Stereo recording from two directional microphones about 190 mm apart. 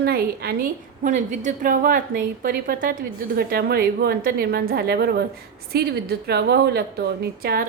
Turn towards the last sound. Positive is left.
turn(degrees=-55)  # may be behind; listen again after turning